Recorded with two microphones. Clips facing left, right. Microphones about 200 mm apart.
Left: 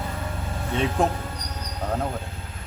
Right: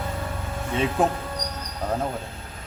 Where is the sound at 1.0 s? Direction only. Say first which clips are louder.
Right 1 dB; 5° right (ahead or behind).